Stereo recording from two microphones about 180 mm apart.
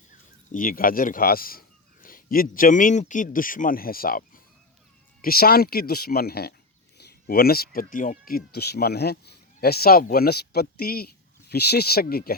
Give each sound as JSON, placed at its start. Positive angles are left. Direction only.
{"t": 0.5, "sound": "a man's voice", "side_deg": 50}
{"t": 5.2, "sound": "speech", "side_deg": 55}